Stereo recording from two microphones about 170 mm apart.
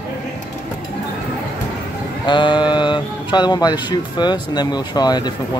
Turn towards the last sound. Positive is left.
turn(degrees=25)  # may be behind; listen again after turning